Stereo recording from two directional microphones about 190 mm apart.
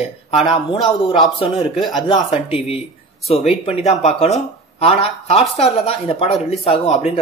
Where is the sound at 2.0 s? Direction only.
30° left (ahead or behind).